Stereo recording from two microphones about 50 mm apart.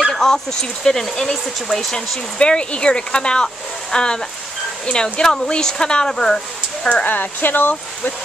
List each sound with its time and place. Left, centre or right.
0.1 s speech: centre
2.0 s speech: centre
7.1 s speech: left